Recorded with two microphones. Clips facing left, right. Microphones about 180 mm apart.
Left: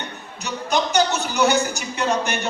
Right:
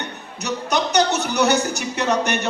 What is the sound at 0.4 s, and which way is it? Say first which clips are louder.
A man's voice: right 1 dB; 65° right (ahead or behind).